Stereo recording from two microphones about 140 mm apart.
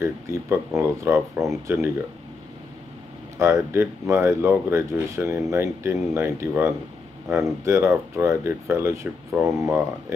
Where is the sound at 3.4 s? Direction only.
20° right (ahead or behind).